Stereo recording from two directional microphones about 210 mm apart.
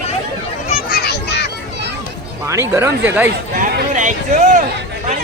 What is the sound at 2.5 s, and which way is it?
Speech, 15° right (ahead or behind).